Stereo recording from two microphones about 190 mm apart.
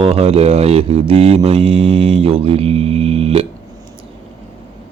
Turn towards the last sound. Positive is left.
turn(degrees=-30)  # may be behind; listen again after turning